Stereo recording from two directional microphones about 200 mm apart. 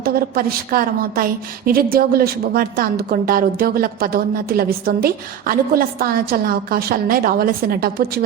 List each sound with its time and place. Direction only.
0.0 s a woman's voice: 50° right (ahead or behind)